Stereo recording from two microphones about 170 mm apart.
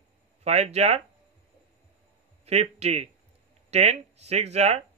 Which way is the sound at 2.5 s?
40° right (ahead or behind).